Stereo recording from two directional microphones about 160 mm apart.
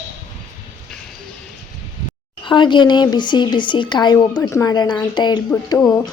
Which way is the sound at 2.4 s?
30° left (ahead or behind).